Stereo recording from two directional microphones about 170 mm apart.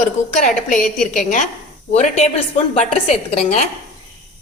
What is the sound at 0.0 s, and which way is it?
A woman's voice, 50° left (ahead or behind).